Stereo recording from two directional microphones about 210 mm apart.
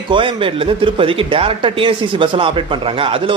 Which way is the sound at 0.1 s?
25° right (ahead or behind).